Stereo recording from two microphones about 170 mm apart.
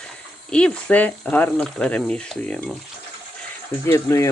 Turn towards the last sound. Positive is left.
turn(degrees=15)  # may be behind; listen again after turning